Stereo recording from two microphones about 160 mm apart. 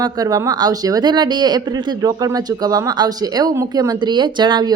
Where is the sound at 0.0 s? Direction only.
25° right (ahead or behind).